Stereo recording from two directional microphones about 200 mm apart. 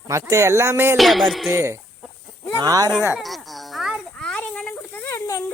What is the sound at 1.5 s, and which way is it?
Speech, 15° right (ahead or behind).